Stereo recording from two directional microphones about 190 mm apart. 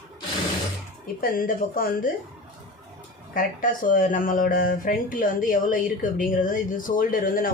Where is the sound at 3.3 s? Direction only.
45° left (ahead or behind).